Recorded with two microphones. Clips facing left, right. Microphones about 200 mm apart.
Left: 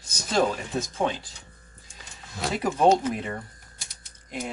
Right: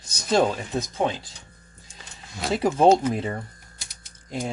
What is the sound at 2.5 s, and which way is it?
Speech, 30° right (ahead or behind).